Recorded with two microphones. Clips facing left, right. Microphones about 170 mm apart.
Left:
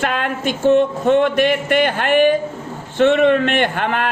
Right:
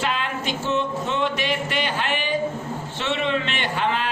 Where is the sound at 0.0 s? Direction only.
55° left (ahead or behind).